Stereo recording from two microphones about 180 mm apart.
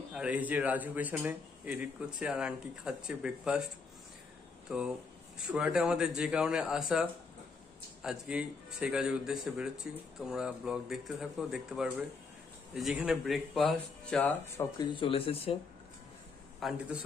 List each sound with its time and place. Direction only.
0.1 s speech: 5° right (ahead or behind)
4.6 s speech: 5° right (ahead or behind)
8.0 s speech: 5° right (ahead or behind)
14.9 s speech: 30° left (ahead or behind)
16.5 s speech: centre (ahead or behind)